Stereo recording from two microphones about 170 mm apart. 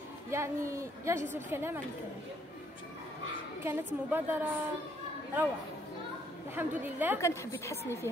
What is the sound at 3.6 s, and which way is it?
Speech, 10° right (ahead or behind).